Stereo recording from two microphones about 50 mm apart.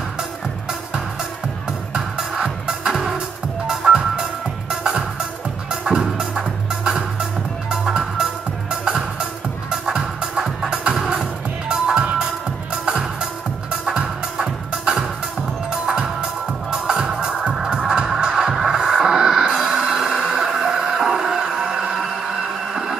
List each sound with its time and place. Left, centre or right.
2.0 s music: centre
11.0 s music: centre
12.8 s music: centre